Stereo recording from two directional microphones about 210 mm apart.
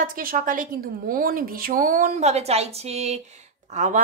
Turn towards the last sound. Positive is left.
turn(degrees=-35)  # may be behind; listen again after turning